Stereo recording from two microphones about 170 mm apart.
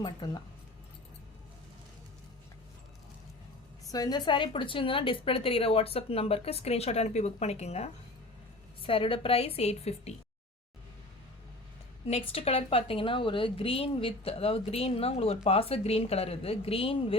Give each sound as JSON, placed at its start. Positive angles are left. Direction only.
{"t": 0.2, "sound": "speech", "side_deg": 25}
{"t": 3.9, "sound": "a woman's voice", "side_deg": 25}
{"t": 12.0, "sound": "a woman's voice", "side_deg": 35}